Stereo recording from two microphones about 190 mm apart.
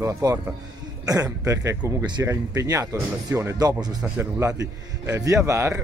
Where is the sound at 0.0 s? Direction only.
15° right (ahead or behind).